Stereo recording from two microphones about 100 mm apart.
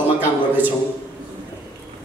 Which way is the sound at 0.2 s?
20° right (ahead or behind).